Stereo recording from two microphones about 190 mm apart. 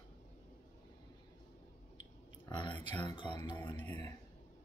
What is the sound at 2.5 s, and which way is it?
Speech, 25° left (ahead or behind).